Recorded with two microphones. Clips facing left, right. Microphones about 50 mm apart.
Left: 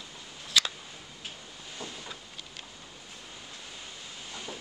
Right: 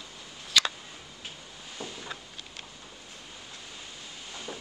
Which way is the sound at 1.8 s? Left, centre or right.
Right.